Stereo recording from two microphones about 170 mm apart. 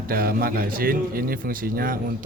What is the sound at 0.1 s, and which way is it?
Speech, 60° right (ahead or behind).